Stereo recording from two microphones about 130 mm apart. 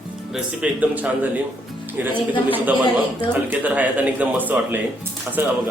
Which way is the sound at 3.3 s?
15° right (ahead or behind).